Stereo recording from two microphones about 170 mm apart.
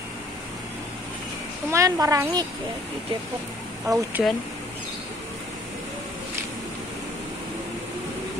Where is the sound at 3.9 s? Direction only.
Centre (ahead or behind).